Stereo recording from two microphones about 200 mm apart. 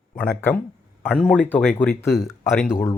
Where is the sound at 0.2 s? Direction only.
10° left (ahead or behind).